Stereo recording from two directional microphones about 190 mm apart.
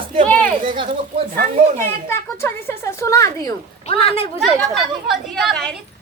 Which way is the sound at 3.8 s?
30° left (ahead or behind).